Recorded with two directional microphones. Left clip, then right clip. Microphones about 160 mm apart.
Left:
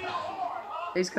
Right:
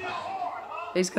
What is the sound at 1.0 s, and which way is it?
Speech, 25° right (ahead or behind).